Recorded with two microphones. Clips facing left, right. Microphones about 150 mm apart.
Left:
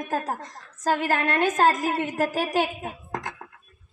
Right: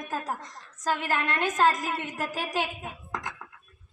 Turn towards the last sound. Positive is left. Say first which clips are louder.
# left 3 dB
turn(degrees=50)  # may be behind; listen again after turning